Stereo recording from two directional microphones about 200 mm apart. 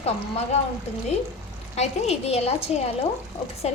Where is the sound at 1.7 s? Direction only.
35° left (ahead or behind).